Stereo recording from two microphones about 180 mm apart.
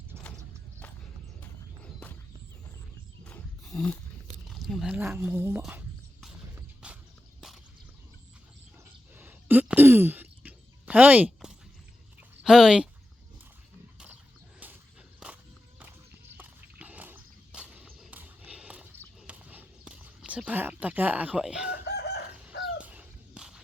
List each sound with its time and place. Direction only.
1.4 s walk: 10° left (ahead or behind)
3.2 s roaring cats: 5° left (ahead or behind)
4.4 s speech: centre (ahead or behind)
6.2 s clip-clop: 5° right (ahead or behind)
9.1 s throat clearing: 10° right (ahead or behind)
12.4 s speech: 5° right (ahead or behind)
14.6 s a sound: 10° right (ahead or behind)
15.2 s walk: 5° right (ahead or behind)
16.4 s walk: 10° right (ahead or behind)
17.8 s horse: 5° right (ahead or behind)
19.3 s a sound: 10° right (ahead or behind)
21.7 s chicken: 65° left (ahead or behind)
22.6 s chicken: 5° right (ahead or behind)